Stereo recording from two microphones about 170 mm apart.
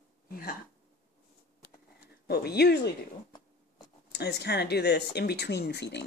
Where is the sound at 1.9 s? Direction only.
70° left (ahead or behind).